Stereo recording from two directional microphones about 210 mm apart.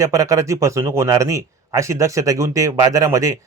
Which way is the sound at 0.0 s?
15° right (ahead or behind).